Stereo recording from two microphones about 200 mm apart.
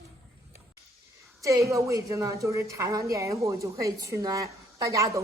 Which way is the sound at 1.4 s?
15° right (ahead or behind).